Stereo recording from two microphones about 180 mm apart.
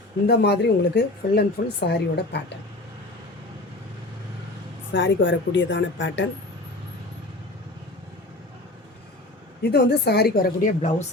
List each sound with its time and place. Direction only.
0.3 s a woman's voice: 65° left (ahead or behind)
4.9 s speech: 90° left
9.6 s a woman's voice: 65° left (ahead or behind); by 10.9 s 50° left (ahead or behind)